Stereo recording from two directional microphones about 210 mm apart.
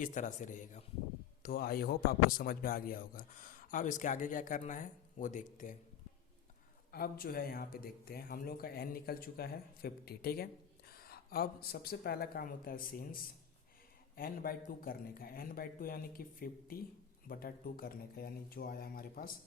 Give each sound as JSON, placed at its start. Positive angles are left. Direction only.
{"t": 0.0, "sound": "speech", "side_deg": 35}
{"t": 6.9, "sound": "speech", "side_deg": 45}
{"t": 14.2, "sound": "speech", "side_deg": 45}